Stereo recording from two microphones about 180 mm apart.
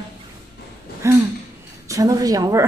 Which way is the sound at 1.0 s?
15° right (ahead or behind).